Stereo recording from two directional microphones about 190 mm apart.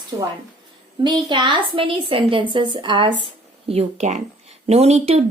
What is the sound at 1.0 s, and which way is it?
A woman's voice, 25° right (ahead or behind).